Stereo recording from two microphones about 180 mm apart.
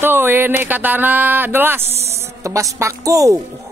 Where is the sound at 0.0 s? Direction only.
10° right (ahead or behind).